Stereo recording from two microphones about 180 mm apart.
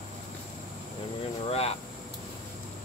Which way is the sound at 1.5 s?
35° left (ahead or behind).